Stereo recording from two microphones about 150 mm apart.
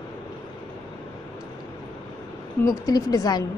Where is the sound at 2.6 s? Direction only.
25° left (ahead or behind).